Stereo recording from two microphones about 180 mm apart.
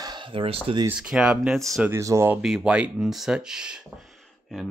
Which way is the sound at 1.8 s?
15° right (ahead or behind).